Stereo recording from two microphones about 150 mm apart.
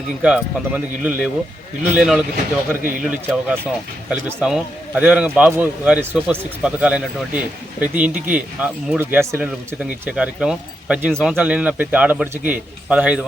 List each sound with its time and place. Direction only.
0.2 s a man's voice: 10° right (ahead or behind)